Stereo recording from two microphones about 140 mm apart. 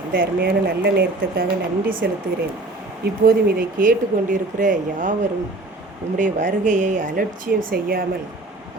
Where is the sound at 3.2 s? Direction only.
90° right.